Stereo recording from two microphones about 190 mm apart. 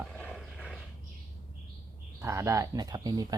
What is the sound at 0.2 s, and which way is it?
Vehicle, centre (ahead or behind).